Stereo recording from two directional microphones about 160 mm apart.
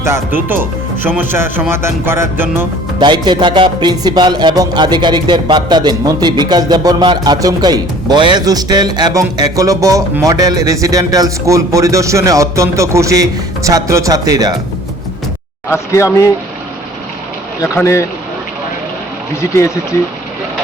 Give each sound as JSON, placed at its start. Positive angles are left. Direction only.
{"t": 0.0, "sound": "speech", "side_deg": -15}
{"t": 3.0, "sound": "music", "side_deg": -30}
{"t": 15.7, "sound": "speech", "side_deg": 20}
{"t": 17.6, "sound": "speech", "side_deg": 20}
{"t": 19.4, "sound": "speech", "side_deg": 20}